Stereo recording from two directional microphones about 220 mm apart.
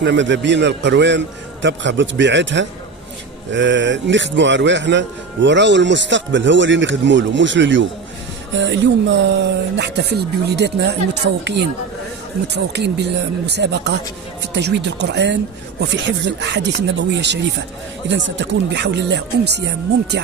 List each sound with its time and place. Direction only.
0.0 s a man's voice: 55° right (ahead or behind)
12.5 s a man's voice: 50° right (ahead or behind)